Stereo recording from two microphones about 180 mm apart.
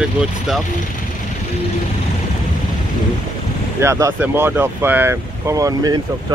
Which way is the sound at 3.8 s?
15° right (ahead or behind).